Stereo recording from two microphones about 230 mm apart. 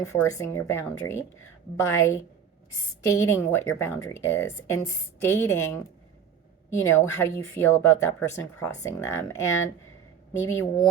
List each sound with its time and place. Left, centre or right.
0.0 s a woman's voice: centre